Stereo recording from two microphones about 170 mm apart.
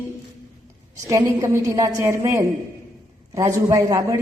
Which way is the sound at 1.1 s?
20° right (ahead or behind).